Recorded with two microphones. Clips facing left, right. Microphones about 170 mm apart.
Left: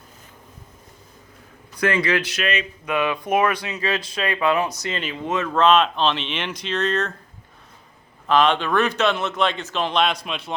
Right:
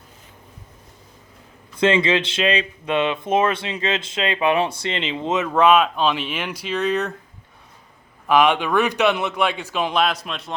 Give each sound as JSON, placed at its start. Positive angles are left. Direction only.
{"t": 1.7, "sound": "speech", "side_deg": -25}
{"t": 8.3, "sound": "a man's voice", "side_deg": -10}